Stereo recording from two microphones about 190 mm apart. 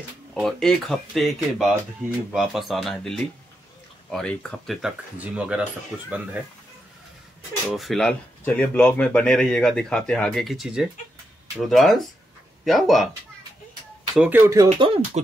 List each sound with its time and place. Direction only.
0.3 s speech: centre (ahead or behind)
7.7 s speech: centre (ahead or behind)
14.1 s speech: 10° right (ahead or behind)
14.7 s speech: 35° right (ahead or behind)